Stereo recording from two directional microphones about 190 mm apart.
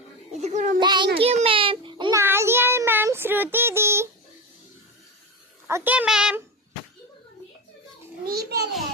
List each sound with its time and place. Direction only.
0.3 s speech: 35° right (ahead or behind)
0.8 s child singing: 25° right (ahead or behind)
1.2 s a sound: 30° right (ahead or behind)
2.2 s child singing: 10° right (ahead or behind)
5.6 s speech: 10° right (ahead or behind)
8.2 s a sound: 55° right (ahead or behind)